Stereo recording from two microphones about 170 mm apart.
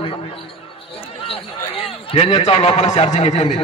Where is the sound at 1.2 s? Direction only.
35° left (ahead or behind).